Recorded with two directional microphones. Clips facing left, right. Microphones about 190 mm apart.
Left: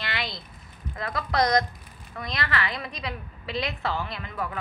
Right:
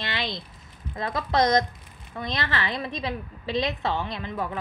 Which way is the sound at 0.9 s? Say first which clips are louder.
Right 2 dB; 25° right (ahead or behind).